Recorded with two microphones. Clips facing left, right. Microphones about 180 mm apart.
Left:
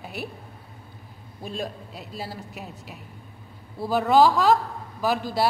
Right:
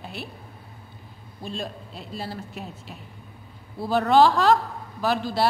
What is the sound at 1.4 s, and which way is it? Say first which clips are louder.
A woman's voice: left 1 dB; 10° left (ahead or behind).